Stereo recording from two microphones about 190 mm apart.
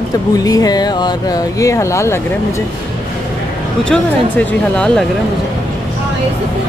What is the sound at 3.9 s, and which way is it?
Speech, 5° left (ahead or behind).